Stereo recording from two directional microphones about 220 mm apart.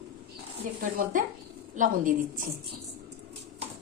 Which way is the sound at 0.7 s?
40° right (ahead or behind).